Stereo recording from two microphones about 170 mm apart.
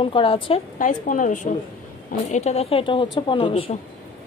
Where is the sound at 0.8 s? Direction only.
50° left (ahead or behind); by 3.8 s 35° left (ahead or behind).